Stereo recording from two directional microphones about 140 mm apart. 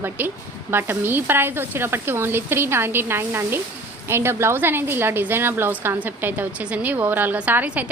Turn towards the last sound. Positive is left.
turn(degrees=-10)  # may be behind; listen again after turning